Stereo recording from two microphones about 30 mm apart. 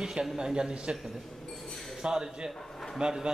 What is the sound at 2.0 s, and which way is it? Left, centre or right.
Speech, right.